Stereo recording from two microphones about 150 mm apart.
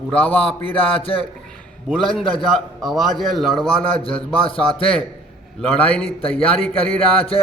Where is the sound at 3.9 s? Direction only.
35° left (ahead or behind).